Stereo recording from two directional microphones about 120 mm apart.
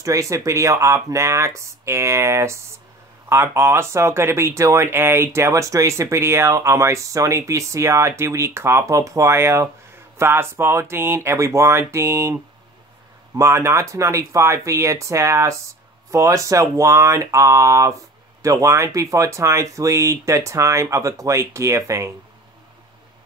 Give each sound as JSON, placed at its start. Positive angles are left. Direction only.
{"t": 0.0, "sound": "speech", "side_deg": -25}
{"t": 13.4, "sound": "speech", "side_deg": -25}